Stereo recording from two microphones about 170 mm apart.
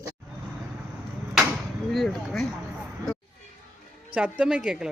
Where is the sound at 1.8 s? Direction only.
Centre (ahead or behind).